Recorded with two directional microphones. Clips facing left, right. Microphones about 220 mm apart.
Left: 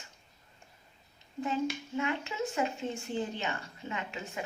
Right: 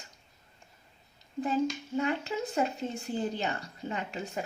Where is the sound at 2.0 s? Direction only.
35° right (ahead or behind).